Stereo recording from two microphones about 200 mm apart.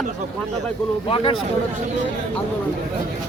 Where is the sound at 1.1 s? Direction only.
25° left (ahead or behind).